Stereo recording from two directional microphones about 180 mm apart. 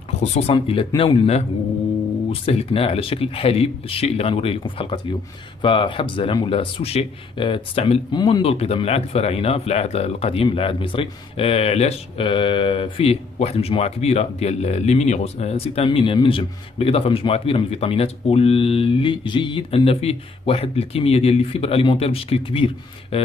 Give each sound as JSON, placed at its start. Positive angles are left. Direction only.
{"t": 0.2, "sound": "speech", "side_deg": 40}
{"t": 2.4, "sound": "speech", "side_deg": 30}